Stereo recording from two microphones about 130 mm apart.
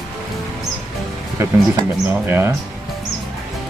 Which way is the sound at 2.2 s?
15° right (ahead or behind).